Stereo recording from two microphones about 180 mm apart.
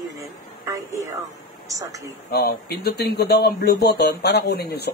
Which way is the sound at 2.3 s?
60° left (ahead or behind).